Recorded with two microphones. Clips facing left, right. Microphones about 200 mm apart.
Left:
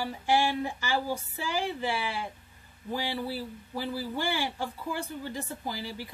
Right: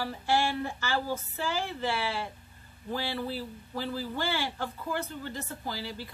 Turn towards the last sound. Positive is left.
turn(degrees=15)  # may be behind; listen again after turning